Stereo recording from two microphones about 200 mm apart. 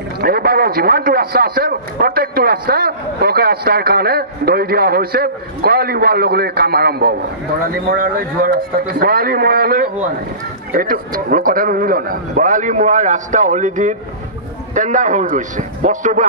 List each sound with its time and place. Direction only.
0.2 s a man's voice: 50° right (ahead or behind)